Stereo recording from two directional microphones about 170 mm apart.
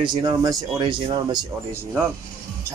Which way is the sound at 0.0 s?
25° right (ahead or behind).